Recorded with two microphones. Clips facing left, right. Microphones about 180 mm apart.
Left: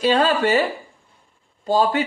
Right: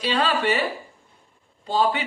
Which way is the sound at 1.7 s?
45° left (ahead or behind).